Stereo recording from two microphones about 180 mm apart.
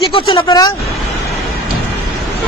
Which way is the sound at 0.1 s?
30° left (ahead or behind).